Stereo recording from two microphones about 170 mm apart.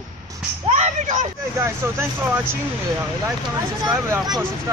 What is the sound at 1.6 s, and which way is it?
Speech, 15° right (ahead or behind).